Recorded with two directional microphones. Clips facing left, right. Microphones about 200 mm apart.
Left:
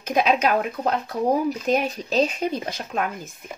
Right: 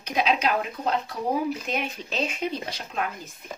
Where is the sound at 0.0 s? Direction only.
50° left (ahead or behind).